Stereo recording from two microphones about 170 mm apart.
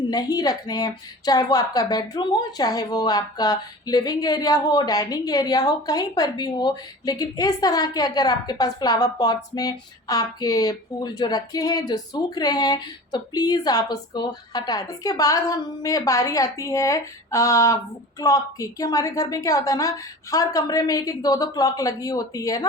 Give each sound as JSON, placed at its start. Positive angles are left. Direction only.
{"t": 0.1, "sound": "a woman's voice", "side_deg": 20}